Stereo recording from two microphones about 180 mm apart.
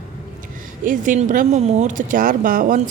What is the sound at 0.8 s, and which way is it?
Speech, 45° right (ahead or behind).